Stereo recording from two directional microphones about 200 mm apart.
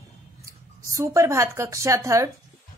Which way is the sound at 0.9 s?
15° right (ahead or behind).